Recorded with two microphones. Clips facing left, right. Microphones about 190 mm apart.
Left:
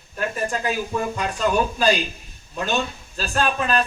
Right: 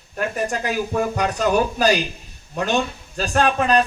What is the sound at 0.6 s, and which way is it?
Speech, 70° right (ahead or behind).